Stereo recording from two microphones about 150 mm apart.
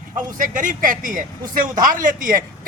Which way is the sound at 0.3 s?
60° right (ahead or behind).